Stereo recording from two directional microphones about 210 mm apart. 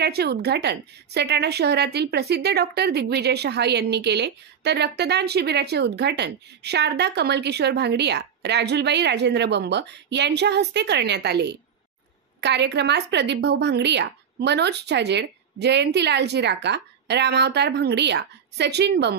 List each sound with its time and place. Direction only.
0.0 s a woman's voice: 50° right (ahead or behind)